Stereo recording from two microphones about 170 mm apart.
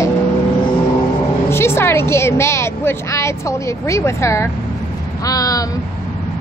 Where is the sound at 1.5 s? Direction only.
15° left (ahead or behind).